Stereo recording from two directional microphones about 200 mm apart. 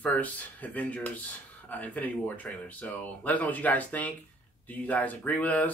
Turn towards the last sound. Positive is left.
turn(degrees=10)  # may be behind; listen again after turning